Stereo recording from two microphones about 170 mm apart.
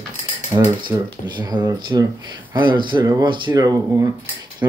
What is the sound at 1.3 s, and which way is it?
Speech, 25° right (ahead or behind).